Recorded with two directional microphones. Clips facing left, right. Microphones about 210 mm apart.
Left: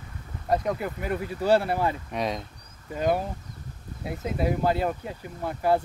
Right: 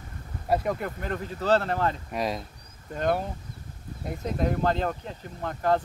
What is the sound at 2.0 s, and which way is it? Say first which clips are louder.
Speech: even; centre (ahead or behind).